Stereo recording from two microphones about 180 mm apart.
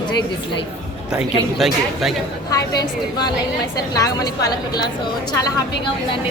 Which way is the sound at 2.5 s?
20° left (ahead or behind).